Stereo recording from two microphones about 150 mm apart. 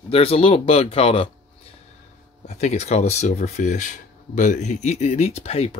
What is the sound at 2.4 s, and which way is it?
Speech, 50° left (ahead or behind).